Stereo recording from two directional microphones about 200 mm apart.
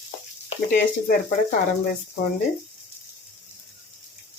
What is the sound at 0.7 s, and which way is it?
Speech, 40° left (ahead or behind).